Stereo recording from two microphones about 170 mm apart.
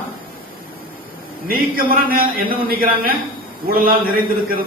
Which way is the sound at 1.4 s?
55° right (ahead or behind).